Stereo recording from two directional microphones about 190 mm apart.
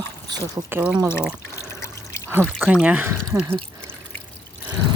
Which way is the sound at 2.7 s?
5° right (ahead or behind).